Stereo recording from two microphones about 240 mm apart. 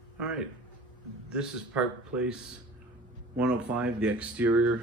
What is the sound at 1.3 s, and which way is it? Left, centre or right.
A man's voice, centre.